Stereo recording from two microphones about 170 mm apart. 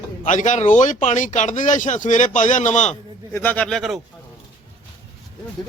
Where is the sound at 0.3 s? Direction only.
45° left (ahead or behind).